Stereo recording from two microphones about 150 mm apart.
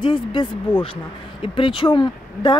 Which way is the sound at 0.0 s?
35° left (ahead or behind).